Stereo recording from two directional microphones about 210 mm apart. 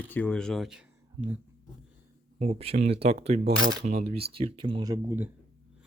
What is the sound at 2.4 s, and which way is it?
Speech, 30° right (ahead or behind).